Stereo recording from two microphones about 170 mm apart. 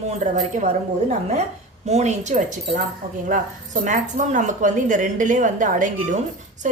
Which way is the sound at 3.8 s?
50° right (ahead or behind).